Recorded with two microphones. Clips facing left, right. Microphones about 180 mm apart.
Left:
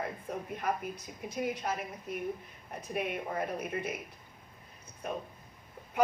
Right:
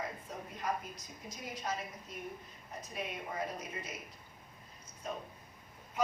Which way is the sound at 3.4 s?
60° left (ahead or behind).